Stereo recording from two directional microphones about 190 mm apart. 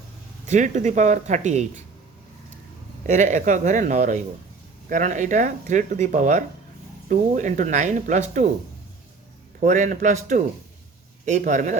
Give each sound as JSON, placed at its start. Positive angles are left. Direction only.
{"t": 0.5, "sound": "speech", "side_deg": -40}
{"t": 3.1, "sound": "speech", "side_deg": -40}
{"t": 9.6, "sound": "speech", "side_deg": -40}